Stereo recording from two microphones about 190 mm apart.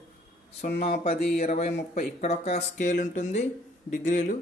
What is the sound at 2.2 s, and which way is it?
Speech, 35° left (ahead or behind).